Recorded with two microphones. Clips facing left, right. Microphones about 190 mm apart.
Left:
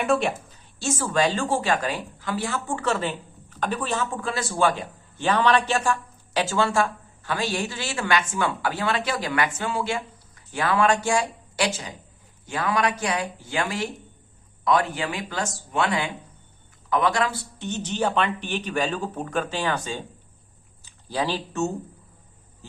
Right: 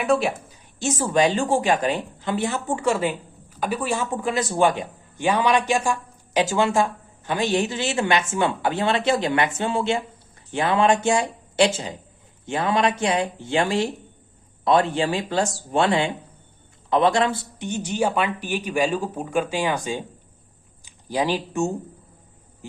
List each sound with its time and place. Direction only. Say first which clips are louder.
0.0 s a woman's voice: right 2 dB; centre (ahead or behind)
0.5 s a woman's voice: right 2 dB; 15° right (ahead or behind)
17.6 s a woman's voice: right 2 dB; 10° right (ahead or behind)